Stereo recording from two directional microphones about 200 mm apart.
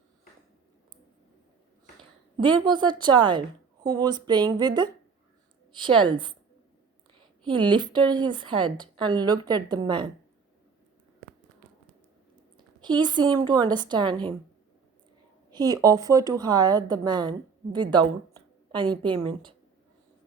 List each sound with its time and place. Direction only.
2.0 s speech: 25° right (ahead or behind)
7.2 s a sound: 25° right (ahead or behind)
7.7 s speech: 20° right (ahead or behind)
12.5 s speech: 20° right (ahead or behind)
15.5 s speech: 20° right (ahead or behind)